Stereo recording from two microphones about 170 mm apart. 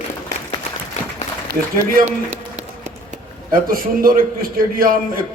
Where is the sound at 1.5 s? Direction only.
50° right (ahead or behind).